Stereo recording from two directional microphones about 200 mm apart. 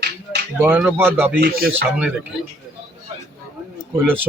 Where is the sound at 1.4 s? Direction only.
45° right (ahead or behind).